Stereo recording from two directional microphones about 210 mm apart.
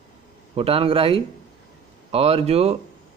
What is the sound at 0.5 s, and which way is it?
Speech, 25° right (ahead or behind).